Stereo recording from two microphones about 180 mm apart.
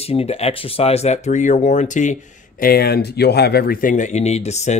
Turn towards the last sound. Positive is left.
turn(degrees=40)  # may be behind; listen again after turning